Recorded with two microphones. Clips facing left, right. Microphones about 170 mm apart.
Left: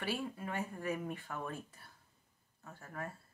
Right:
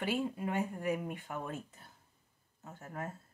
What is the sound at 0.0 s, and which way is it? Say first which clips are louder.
Speech: right 5 dB; 20° right (ahead or behind).